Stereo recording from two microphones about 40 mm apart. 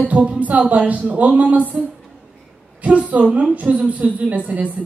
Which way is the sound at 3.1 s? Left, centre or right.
Right.